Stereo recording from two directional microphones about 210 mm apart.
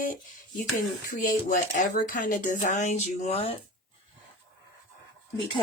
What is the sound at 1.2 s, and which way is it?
Speech, 40° left (ahead or behind).